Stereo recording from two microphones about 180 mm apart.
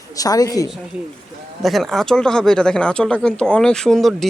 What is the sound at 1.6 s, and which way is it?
Speech, centre (ahead or behind).